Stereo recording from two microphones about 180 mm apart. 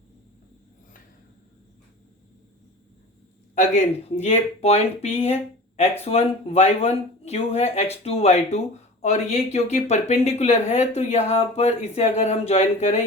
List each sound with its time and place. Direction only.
4.2 s speech: 35° left (ahead or behind)